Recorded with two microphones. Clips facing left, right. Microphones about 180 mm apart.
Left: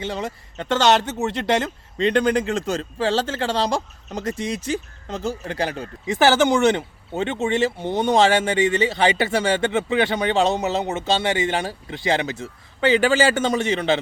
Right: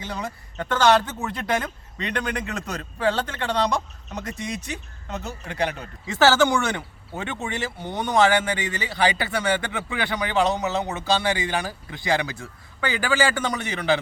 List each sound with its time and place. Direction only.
0.0 s speech: 25° left (ahead or behind)
6.1 s speech: 15° left (ahead or behind)